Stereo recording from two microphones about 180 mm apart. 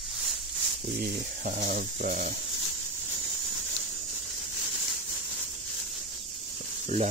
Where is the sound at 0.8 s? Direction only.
50° right (ahead or behind).